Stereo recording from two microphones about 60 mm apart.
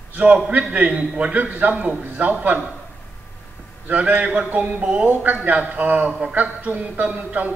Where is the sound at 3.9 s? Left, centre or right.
Right.